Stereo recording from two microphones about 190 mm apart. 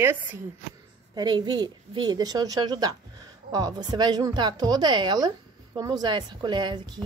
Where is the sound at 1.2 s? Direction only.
25° right (ahead or behind).